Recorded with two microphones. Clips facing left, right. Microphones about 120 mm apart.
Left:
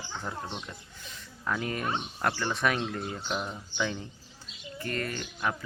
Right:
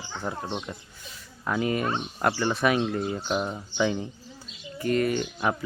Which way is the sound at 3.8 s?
15° right (ahead or behind).